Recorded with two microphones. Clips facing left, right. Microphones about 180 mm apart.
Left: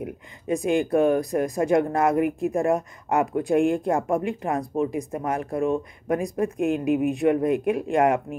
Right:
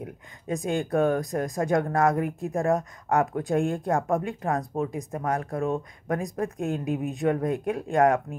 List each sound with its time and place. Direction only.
0.7 s speech: 15° left (ahead or behind)